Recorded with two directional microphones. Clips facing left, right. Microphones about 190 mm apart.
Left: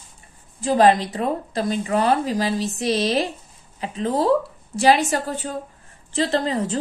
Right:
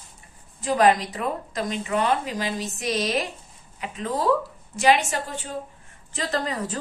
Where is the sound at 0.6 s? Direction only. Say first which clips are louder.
Left 3 dB; 30° left (ahead or behind).